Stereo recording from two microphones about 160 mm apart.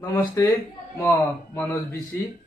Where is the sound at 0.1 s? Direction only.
20° left (ahead or behind).